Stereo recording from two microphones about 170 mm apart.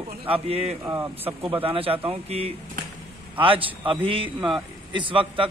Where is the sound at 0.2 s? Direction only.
35° right (ahead or behind).